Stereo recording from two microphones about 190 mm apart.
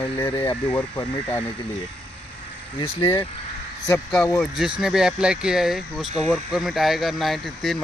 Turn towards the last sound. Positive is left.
turn(degrees=0)  # may be behind; listen again after turning